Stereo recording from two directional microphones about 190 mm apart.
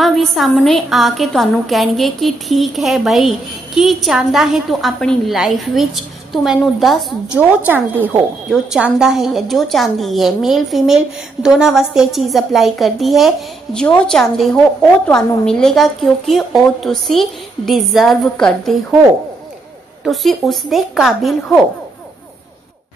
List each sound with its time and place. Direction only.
0.0 s a woman's voice: centre (ahead or behind)
7.6 s a woman's voice: 10° right (ahead or behind)
20.0 s a woman's voice: centre (ahead or behind)